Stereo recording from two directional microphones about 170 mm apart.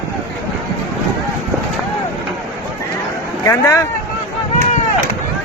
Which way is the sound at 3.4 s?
15° left (ahead or behind).